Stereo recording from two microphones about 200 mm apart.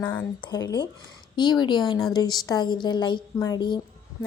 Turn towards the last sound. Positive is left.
turn(degrees=20)  # may be behind; listen again after turning